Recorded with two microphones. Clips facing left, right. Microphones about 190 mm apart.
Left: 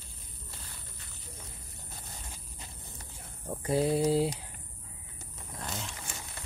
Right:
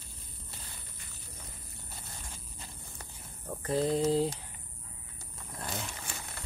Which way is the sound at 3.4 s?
10° left (ahead or behind).